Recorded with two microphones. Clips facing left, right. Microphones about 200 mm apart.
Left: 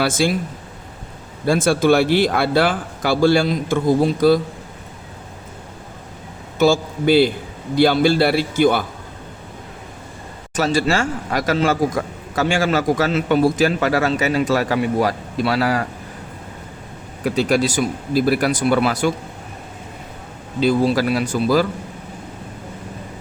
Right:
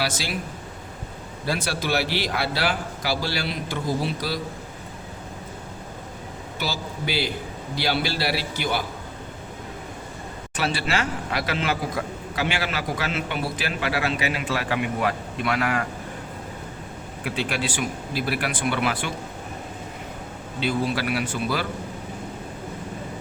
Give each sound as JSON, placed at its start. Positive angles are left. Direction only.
{"t": 0.0, "sound": "speech", "side_deg": 50}
{"t": 1.5, "sound": "speech", "side_deg": 50}
{"t": 6.6, "sound": "speech", "side_deg": 50}
{"t": 10.5, "sound": "a man's voice", "side_deg": 45}
{"t": 17.2, "sound": "a man's voice", "side_deg": 40}
{"t": 20.6, "sound": "a man's voice", "side_deg": 40}